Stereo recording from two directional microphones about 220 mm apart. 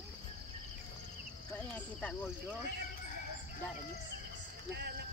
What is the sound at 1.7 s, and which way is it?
Speech, 5° left (ahead or behind).